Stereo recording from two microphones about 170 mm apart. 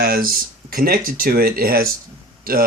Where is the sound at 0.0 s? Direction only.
65° right (ahead or behind).